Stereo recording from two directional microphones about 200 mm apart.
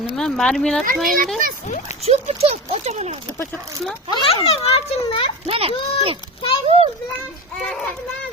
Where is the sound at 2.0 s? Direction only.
30° right (ahead or behind).